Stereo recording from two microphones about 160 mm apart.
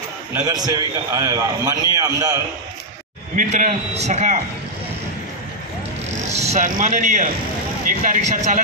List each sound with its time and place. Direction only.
0.3 s a man's voice: 25° right (ahead or behind)
3.3 s a man's voice: 50° right (ahead or behind)
6.3 s a man's voice: 45° right (ahead or behind)